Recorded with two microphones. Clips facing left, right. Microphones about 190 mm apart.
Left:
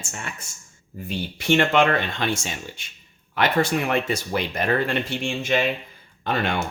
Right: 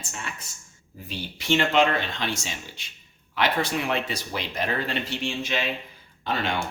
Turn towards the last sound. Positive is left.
turn(degrees=55)  # may be behind; listen again after turning